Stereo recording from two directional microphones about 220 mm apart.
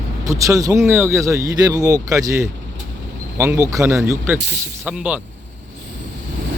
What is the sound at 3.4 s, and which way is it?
Speech, 15° right (ahead or behind).